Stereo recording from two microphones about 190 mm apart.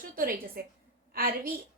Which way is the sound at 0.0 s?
50° right (ahead or behind).